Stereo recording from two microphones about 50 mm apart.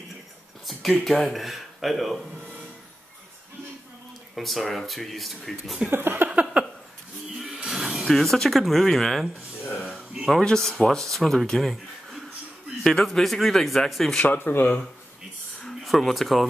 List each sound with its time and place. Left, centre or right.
0.7 s speech: centre
4.4 s speech: centre
5.9 s a sound: right
6.5 s a sound: centre
7.6 s music: centre
8.1 s speech: centre
9.8 s a sound: right
10.3 s speech: centre
14.2 s speech: left
15.6 s speech: centre